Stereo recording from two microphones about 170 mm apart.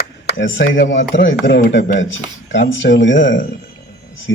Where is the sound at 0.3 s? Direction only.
90° left.